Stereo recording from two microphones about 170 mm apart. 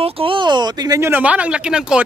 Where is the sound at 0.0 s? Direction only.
30° right (ahead or behind).